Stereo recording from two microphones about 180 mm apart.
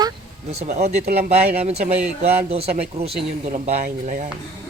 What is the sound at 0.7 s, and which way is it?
Speech, 40° right (ahead or behind).